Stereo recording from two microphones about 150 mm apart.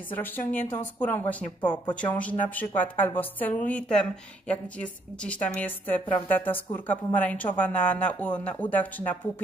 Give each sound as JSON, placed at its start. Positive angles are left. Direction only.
{"t": 0.1, "sound": "a woman's voice", "side_deg": 10}
{"t": 1.6, "sound": "speech", "side_deg": 30}
{"t": 2.1, "sound": "a woman's voice", "side_deg": 10}